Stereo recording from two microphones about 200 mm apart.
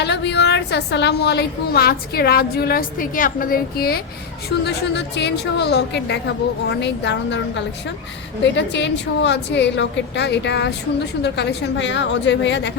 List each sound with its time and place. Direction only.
0.0 s a woman's voice: 60° left (ahead or behind)